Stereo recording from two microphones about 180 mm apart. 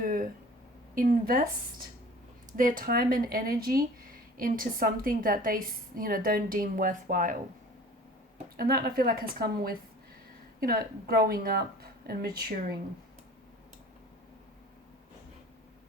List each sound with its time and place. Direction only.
0.0 s a sound: 50° right (ahead or behind)
0.9 s speech: 50° right (ahead or behind)
2.5 s speech: 50° right (ahead or behind)
8.5 s speech: 60° right (ahead or behind)